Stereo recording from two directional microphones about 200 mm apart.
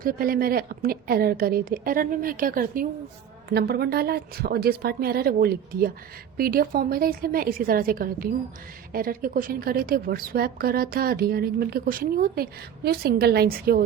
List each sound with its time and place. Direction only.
0.0 s a woman's voice: 45° right (ahead or behind)